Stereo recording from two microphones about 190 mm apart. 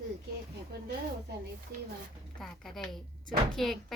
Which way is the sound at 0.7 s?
60° right (ahead or behind).